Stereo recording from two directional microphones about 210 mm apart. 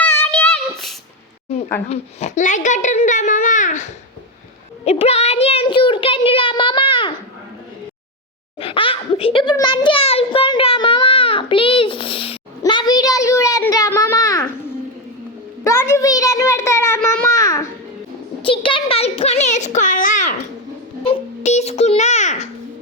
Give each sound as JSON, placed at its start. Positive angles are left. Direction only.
{"t": 0.0, "sound": "child singing", "side_deg": 10}
{"t": 1.9, "sound": "a child's voice", "side_deg": 30}
{"t": 4.9, "sound": "a child's voice", "side_deg": 30}
{"t": 8.5, "sound": "a child's voice", "side_deg": 25}
{"t": 15.6, "sound": "a sound", "side_deg": 15}
{"t": 18.4, "sound": "a child's voice", "side_deg": 25}